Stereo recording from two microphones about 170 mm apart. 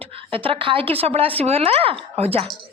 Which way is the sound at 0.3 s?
30° right (ahead or behind).